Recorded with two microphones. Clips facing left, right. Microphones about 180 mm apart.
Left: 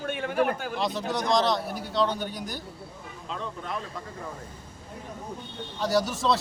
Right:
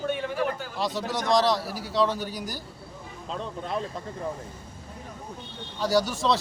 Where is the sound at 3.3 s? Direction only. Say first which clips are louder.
Right 3 dB; 35° right (ahead or behind).